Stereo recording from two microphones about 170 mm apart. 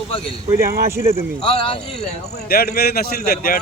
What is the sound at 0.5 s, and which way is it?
Speech, 60° right (ahead or behind).